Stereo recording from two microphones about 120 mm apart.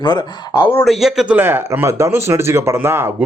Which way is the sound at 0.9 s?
5° right (ahead or behind).